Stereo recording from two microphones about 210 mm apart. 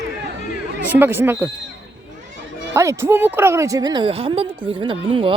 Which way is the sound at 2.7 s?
15° right (ahead or behind).